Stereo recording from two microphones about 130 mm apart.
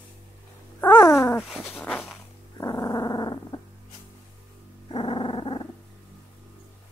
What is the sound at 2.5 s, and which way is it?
Growling, 25° left (ahead or behind).